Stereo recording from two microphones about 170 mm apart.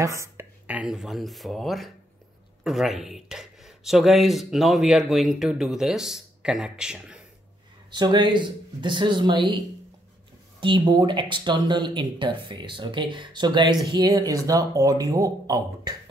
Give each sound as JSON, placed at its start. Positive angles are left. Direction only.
{"t": 0.0, "sound": "speech", "side_deg": -15}
{"t": 7.9, "sound": "speech", "side_deg": -25}
{"t": 10.6, "sound": "speech", "side_deg": -25}